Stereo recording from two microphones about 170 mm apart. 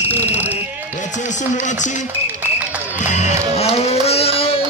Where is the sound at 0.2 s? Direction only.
40° left (ahead or behind).